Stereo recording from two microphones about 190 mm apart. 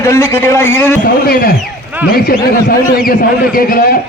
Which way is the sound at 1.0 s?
50° left (ahead or behind).